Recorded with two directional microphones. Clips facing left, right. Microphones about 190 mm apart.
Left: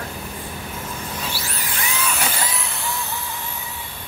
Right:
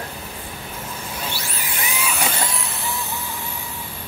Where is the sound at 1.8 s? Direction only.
15° right (ahead or behind).